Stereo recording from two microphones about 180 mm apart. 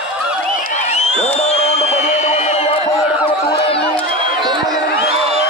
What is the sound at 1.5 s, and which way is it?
Music, 40° left (ahead or behind).